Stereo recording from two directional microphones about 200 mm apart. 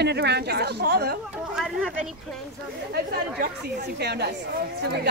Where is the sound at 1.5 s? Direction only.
5° right (ahead or behind).